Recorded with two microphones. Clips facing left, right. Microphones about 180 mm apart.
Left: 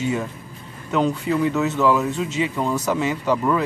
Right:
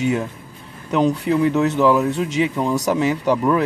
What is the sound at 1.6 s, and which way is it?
Speech, centre (ahead or behind).